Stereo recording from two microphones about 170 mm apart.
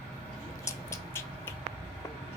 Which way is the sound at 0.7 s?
15° left (ahead or behind).